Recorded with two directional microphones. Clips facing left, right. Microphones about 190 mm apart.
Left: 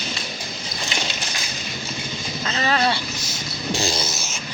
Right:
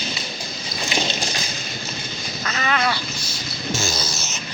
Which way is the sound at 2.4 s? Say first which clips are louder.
Left 2 dB; 30° left (ahead or behind).